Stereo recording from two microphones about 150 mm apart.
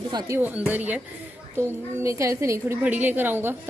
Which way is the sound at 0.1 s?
30° right (ahead or behind).